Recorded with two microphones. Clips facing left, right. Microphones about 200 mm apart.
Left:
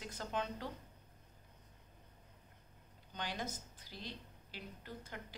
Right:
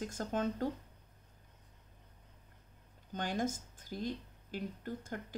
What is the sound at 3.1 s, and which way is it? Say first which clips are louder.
A woman's voice: right 8 dB; 50° right (ahead or behind).